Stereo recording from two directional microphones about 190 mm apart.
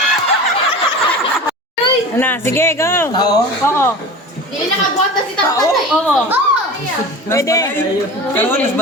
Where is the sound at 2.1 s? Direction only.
10° left (ahead or behind).